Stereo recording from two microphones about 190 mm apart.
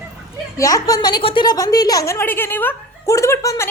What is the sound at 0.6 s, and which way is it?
A woman's voice, 15° left (ahead or behind).